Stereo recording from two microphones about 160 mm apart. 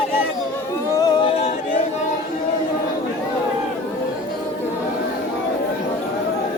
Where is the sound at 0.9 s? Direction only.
25° left (ahead or behind).